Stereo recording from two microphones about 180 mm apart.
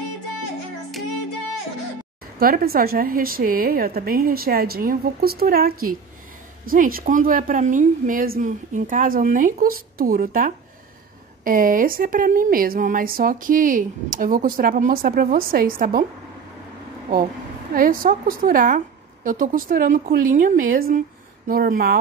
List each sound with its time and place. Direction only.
2.3 s a woman's voice: 55° right (ahead or behind)
17.7 s speech: 50° right (ahead or behind)